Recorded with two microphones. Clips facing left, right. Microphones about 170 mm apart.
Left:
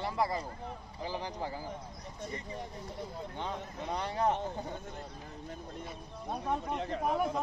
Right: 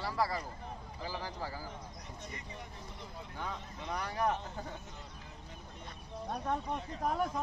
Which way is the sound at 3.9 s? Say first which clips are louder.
Left 3 dB; 25° left (ahead or behind).